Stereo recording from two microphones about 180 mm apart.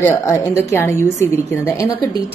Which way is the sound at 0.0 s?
15° left (ahead or behind).